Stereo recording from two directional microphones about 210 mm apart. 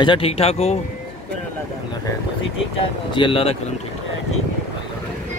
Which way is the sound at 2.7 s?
25° left (ahead or behind).